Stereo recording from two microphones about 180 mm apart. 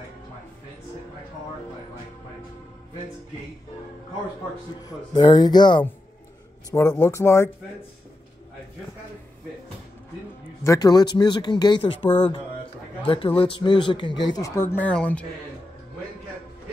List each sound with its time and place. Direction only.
4.8 s speech: 25° left (ahead or behind)
10.6 s speech: 20° left (ahead or behind)